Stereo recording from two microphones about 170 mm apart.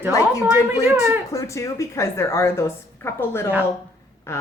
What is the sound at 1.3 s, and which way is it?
Speech, 15° left (ahead or behind).